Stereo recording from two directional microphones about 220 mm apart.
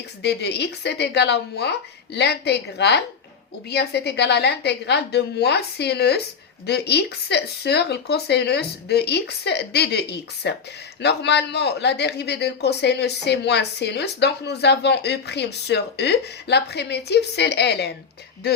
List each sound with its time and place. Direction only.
0.2 s a man's voice: 50° left (ahead or behind)